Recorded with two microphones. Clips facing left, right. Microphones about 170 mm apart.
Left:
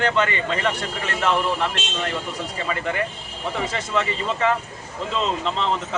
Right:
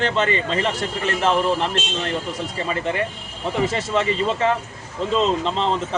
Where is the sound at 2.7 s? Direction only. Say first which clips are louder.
Right 1 dB; 30° right (ahead or behind).